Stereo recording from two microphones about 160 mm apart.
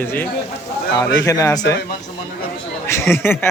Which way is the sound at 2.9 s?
15° left (ahead or behind).